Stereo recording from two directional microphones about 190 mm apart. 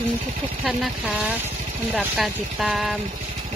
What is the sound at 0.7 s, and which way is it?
Speech, 5° right (ahead or behind).